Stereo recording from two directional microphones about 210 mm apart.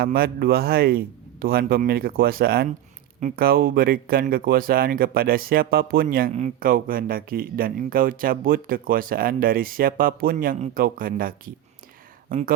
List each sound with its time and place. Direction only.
0.0 s speech: 45° right (ahead or behind)